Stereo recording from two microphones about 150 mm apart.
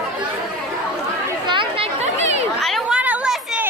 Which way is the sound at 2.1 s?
45° right (ahead or behind).